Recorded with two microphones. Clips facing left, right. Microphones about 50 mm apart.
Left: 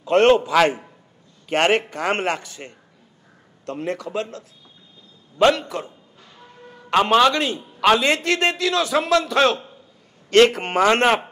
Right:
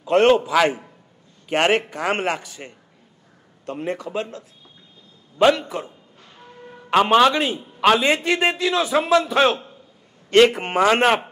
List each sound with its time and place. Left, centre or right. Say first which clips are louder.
0.0 s a man's voice: even; centre
7.1 s a man's voice: even; centre